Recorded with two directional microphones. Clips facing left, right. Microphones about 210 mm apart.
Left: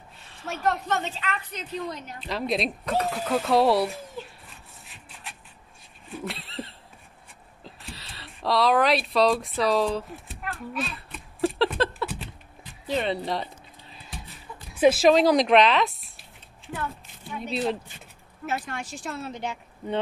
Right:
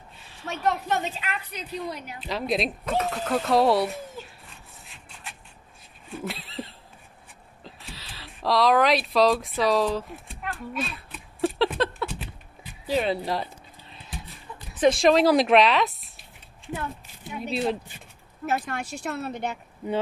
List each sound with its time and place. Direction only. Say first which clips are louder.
0.2 s a sound: even; centre (ahead or behind)
0.8 s a woman's voice: right 1 dB; 15° right (ahead or behind)
6.1 s a sound: right 1 dB; centre (ahead or behind)
14.7 s speech: left 1 dB; 5° left (ahead or behind)
17.3 s a woman's voice: right 1 dB; centre (ahead or behind)
18.5 s speech: right 3 dB; 55° right (ahead or behind)
19.8 s speech: right 1 dB; 10° right (ahead or behind)